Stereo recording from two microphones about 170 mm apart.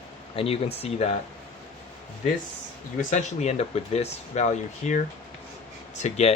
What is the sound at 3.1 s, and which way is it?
Speech, 45° left (ahead or behind).